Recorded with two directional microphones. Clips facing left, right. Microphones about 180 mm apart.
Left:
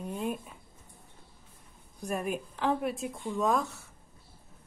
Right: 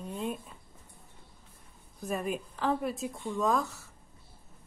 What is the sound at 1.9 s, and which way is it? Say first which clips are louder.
Speech: even; centre (ahead or behind).